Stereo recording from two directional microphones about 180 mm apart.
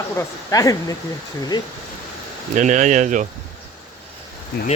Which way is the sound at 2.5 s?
40° right (ahead or behind).